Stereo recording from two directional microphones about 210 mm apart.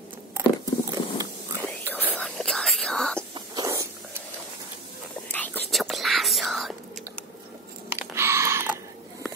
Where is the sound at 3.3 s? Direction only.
20° right (ahead or behind).